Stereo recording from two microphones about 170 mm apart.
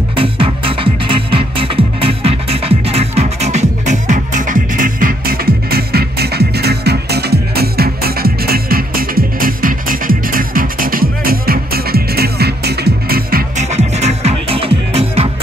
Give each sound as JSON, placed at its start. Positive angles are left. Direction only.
{"t": 0.1, "sound": "music", "side_deg": -30}
{"t": 13.7, "sound": "music", "side_deg": -40}